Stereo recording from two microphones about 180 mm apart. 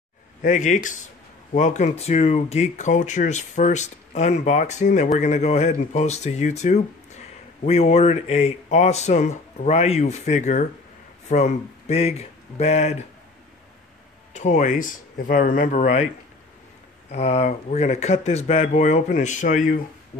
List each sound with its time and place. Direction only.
0.4 s speech: 45° left (ahead or behind)
14.3 s speech: 40° left (ahead or behind)
17.1 s speech: 35° left (ahead or behind)